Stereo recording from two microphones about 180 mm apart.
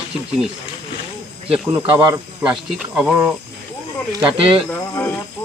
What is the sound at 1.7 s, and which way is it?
Speech, 10° right (ahead or behind).